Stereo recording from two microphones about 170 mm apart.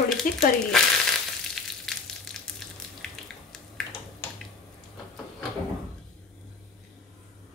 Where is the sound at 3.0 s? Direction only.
5° left (ahead or behind).